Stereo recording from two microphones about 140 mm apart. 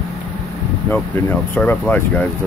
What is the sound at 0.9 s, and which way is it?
Speech, 15° left (ahead or behind).